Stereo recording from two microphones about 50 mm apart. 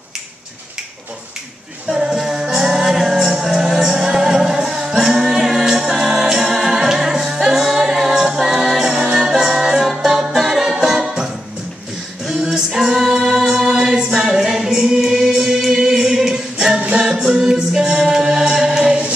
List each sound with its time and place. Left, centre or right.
1.9 s music: centre
12.5 s music: centre
13.3 s a capella: centre
16.7 s music: right
17.0 s music: centre